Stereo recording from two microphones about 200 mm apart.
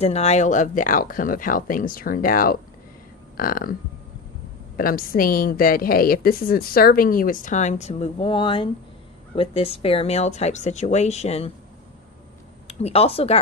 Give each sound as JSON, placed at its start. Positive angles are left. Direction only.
{"t": 0.0, "sound": "a woman's voice", "side_deg": 30}
{"t": 4.7, "sound": "a woman's voice", "side_deg": 45}
{"t": 12.6, "sound": "speech", "side_deg": 30}